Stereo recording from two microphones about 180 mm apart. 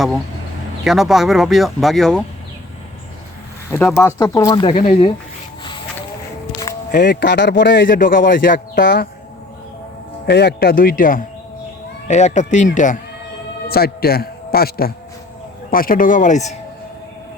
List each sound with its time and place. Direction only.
0.9 s speech: centre (ahead or behind)
3.7 s speech: 10° left (ahead or behind); by 4.8 s 25° left (ahead or behind)
6.9 s speech: 70° left (ahead or behind)
7.9 s speech: 50° left (ahead or behind)
10.2 s speech: 65° left (ahead or behind); by 13.0 s 45° left (ahead or behind)
13.7 s speech: 60° left (ahead or behind); by 16.6 s 40° left (ahead or behind)